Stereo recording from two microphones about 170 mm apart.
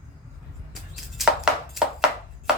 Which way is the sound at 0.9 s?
Centre (ahead or behind).